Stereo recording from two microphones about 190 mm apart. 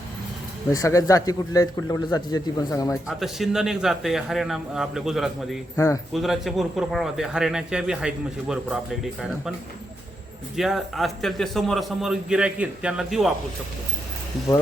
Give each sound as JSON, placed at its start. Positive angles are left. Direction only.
{"t": 0.7, "sound": "a man's voice", "side_deg": 15}
{"t": 2.9, "sound": "a man's voice", "side_deg": 0}
{"t": 5.7, "sound": "a man's voice", "side_deg": 15}
{"t": 6.1, "sound": "a man's voice", "side_deg": 0}
{"t": 10.6, "sound": "a man's voice", "side_deg": 0}